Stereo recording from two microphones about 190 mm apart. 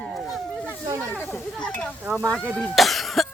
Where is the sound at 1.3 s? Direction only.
5° left (ahead or behind).